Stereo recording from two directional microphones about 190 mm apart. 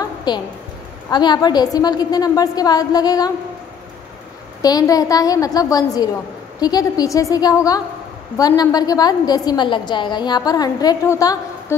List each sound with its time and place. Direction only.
0.0 s a sound: 20° left (ahead or behind)
1.1 s a woman's voice: 20° left (ahead or behind)
4.6 s a woman's voice: 20° left (ahead or behind)